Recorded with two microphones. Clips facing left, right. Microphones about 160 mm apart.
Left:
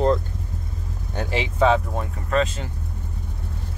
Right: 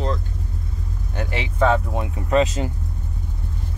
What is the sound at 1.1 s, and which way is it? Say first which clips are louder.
Speech: left 2 dB; 25° left (ahead or behind).